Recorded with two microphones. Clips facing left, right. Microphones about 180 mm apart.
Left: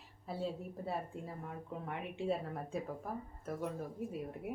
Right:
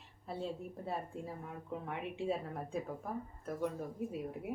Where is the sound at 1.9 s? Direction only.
Centre (ahead or behind).